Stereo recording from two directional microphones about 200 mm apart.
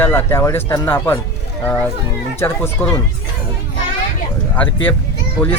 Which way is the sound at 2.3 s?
10° left (ahead or behind).